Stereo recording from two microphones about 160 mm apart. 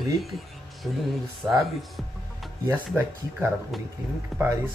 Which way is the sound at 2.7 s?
15° right (ahead or behind).